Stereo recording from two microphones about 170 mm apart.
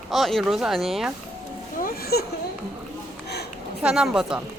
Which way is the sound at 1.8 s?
65° left (ahead or behind).